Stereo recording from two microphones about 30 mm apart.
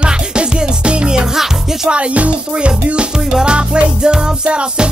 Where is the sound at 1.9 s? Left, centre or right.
Right.